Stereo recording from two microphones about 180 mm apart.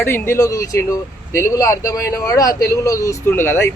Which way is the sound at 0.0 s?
15° left (ahead or behind).